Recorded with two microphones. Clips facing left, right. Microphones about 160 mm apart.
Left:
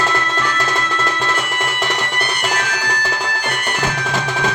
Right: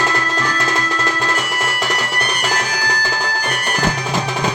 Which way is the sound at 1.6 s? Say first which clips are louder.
Even; 5° right (ahead or behind).